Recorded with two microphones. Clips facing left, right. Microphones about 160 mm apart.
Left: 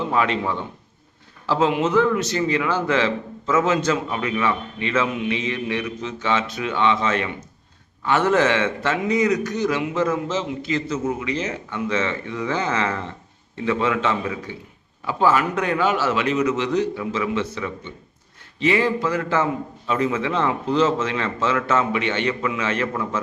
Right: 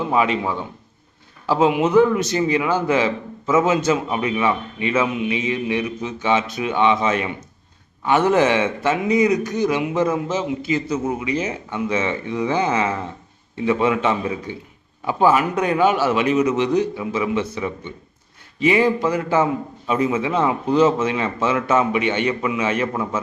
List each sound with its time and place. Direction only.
0.1 s a man's voice: 10° right (ahead or behind)